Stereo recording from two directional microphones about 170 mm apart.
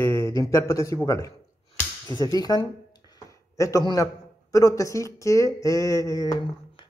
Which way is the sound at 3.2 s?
20° left (ahead or behind).